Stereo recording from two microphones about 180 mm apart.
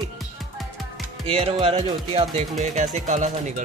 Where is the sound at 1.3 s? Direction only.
30° right (ahead or behind).